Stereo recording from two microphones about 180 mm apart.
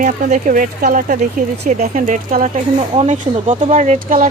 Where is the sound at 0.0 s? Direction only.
45° right (ahead or behind).